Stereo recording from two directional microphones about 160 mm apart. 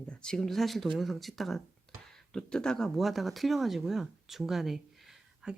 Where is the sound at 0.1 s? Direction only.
5° left (ahead or behind).